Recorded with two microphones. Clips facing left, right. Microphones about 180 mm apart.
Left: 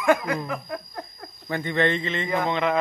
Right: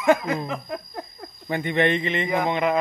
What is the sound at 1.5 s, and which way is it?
A man's voice, 20° right (ahead or behind).